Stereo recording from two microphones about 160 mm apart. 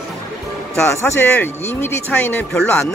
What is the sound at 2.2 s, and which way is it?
Mantra, 5° left (ahead or behind).